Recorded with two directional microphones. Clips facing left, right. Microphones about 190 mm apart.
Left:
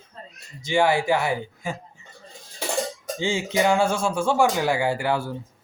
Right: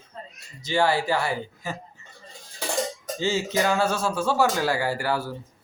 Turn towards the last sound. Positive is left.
turn(degrees=20)  # may be behind; listen again after turning